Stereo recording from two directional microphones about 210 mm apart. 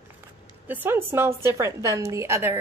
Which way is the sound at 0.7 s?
10° right (ahead or behind).